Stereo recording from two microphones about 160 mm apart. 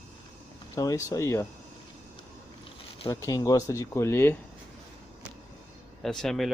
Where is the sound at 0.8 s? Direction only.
20° left (ahead or behind).